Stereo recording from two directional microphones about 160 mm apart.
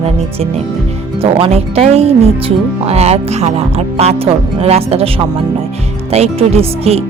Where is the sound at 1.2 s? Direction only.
35° right (ahead or behind).